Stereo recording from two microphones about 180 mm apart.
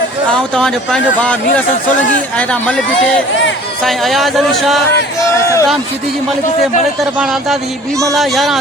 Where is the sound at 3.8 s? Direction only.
Centre (ahead or behind).